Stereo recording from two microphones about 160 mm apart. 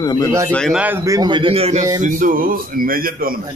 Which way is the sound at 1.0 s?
25° right (ahead or behind).